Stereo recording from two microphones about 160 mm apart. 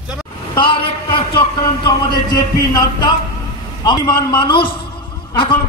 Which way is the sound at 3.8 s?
25° left (ahead or behind).